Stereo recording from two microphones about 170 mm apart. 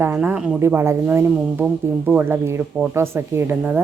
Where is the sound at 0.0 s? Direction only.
10° right (ahead or behind).